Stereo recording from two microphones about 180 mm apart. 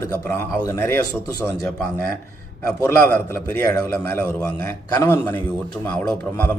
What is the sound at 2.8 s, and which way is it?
A man's voice, 15° left (ahead or behind).